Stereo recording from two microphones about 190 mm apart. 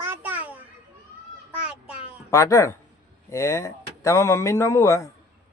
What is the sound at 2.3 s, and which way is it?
Speech, 15° left (ahead or behind).